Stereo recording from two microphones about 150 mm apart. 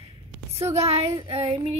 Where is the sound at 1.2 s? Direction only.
40° right (ahead or behind).